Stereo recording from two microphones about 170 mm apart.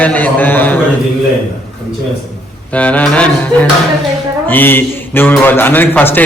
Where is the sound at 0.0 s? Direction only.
10° left (ahead or behind).